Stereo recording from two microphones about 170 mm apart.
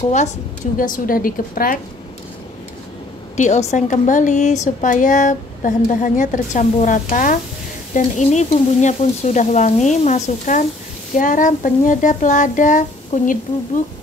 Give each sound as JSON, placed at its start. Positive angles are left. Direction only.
{"t": 0.7, "sound": "a woman's voice", "side_deg": 55}
{"t": 3.3, "sound": "a woman's voice", "side_deg": 45}